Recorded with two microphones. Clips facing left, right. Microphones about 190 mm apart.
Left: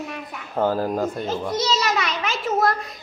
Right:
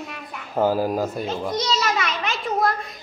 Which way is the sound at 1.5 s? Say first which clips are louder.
Left 1 dB; centre (ahead or behind).